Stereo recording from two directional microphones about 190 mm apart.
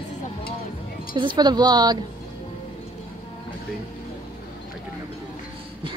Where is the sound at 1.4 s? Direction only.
20° right (ahead or behind).